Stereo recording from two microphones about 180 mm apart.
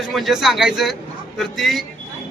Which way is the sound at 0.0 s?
Centre (ahead or behind).